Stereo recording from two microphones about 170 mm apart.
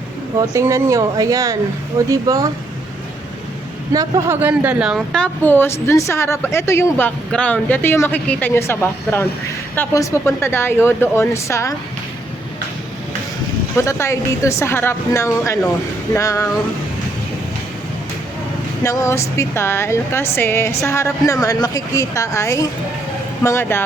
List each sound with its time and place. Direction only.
0.3 s speech: 15° right (ahead or behind)
3.9 s a woman's voice: 15° right (ahead or behind); by 11.7 s 15° left (ahead or behind)
13.7 s a woman's voice: 15° left (ahead or behind)
18.8 s a woman's voice: 20° left (ahead or behind)